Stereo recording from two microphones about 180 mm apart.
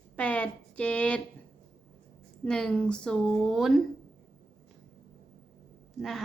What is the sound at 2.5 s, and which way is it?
A woman's voice, 5° left (ahead or behind).